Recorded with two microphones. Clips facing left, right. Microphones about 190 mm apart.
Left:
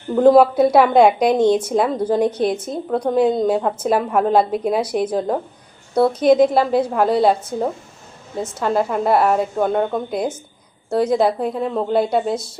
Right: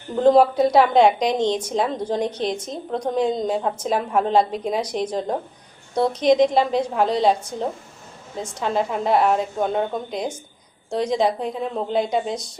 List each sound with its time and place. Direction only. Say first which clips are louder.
0.2 s a woman's voice: left 3 dB; 10° left (ahead or behind)
11.3 s a woman's voice: left 4 dB; 55° left (ahead or behind)
11.9 s a woman's voice: left 4 dB; 5° left (ahead or behind)